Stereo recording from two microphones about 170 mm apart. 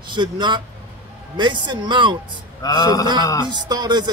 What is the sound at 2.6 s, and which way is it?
Speech, 20° left (ahead or behind).